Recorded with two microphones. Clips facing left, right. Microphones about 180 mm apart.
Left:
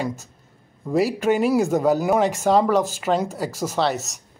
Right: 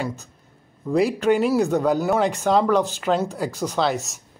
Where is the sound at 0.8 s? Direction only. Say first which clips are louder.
Right 1 dB; 5° left (ahead or behind).